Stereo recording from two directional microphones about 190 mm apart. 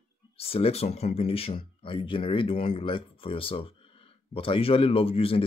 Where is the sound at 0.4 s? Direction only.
30° left (ahead or behind).